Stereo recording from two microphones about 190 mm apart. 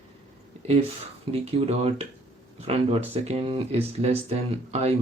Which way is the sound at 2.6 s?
30° right (ahead or behind).